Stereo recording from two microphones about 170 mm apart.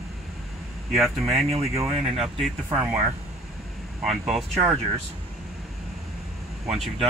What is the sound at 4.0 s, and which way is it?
Speech, centre (ahead or behind).